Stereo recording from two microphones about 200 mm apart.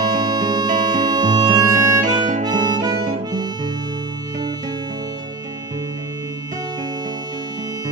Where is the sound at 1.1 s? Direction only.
20° right (ahead or behind).